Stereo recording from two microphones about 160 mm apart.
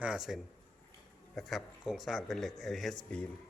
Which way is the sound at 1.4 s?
Centre (ahead or behind).